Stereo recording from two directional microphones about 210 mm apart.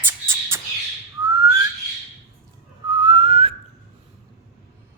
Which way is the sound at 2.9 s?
25° right (ahead or behind).